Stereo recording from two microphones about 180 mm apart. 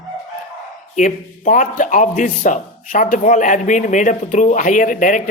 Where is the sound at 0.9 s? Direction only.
45° left (ahead or behind).